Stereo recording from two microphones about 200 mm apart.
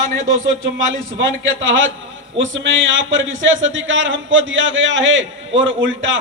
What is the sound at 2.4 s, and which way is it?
A man's voice, 70° right (ahead or behind).